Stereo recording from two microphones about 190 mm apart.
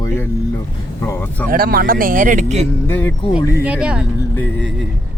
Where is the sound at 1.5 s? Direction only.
50° right (ahead or behind).